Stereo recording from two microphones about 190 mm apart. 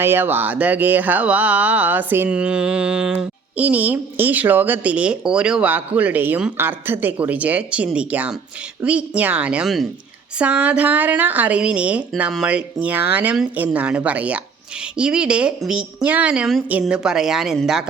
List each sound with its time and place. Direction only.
0.0 s a woman's voice: 10° right (ahead or behind)